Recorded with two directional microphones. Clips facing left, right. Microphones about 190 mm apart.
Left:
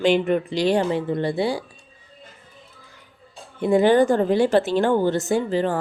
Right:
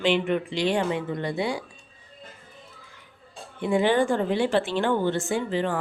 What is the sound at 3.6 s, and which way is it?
Speech, 40° left (ahead or behind).